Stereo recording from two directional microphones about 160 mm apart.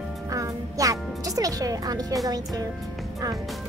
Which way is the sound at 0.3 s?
20° right (ahead or behind).